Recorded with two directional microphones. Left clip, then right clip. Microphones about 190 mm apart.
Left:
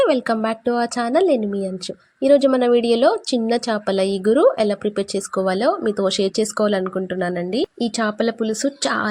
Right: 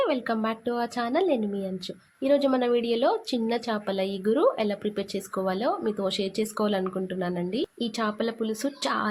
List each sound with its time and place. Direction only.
0.0 s a woman's voice: 35° left (ahead or behind)